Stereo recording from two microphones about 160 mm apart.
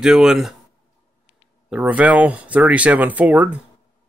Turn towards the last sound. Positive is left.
turn(degrees=-10)  # may be behind; listen again after turning